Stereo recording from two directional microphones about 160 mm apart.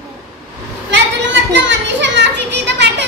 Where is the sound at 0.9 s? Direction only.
90° right.